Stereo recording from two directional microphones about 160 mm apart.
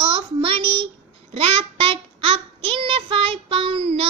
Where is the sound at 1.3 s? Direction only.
35° right (ahead or behind).